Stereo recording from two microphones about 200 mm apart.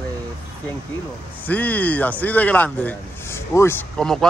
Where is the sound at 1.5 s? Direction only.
10° left (ahead or behind).